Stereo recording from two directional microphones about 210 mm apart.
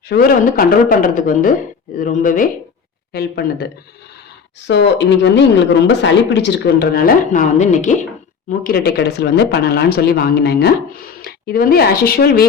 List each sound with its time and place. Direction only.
0.1 s a woman's voice: 45° left (ahead or behind)